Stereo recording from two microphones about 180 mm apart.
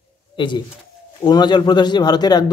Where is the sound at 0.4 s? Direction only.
25° left (ahead or behind).